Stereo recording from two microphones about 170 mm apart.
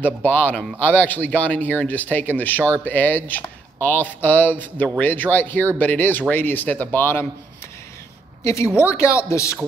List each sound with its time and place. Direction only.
0.0 s speech: 10° left (ahead or behind)
8.4 s speech: 15° left (ahead or behind)